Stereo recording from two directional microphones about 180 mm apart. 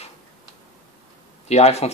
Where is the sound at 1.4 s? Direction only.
35° left (ahead or behind).